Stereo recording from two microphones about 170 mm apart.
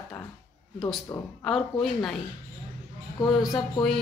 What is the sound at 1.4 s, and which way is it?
Speech, centre (ahead or behind).